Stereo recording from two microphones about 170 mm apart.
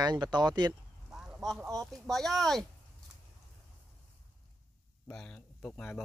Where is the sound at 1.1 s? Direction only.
Centre (ahead or behind).